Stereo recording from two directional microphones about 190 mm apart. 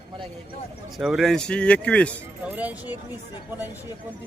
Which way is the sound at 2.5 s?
10° right (ahead or behind).